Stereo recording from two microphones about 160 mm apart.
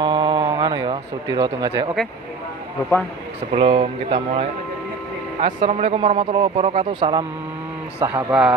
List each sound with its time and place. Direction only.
0.0 s speech: 30° right (ahead or behind)
3.5 s a man's voice: 35° right (ahead or behind)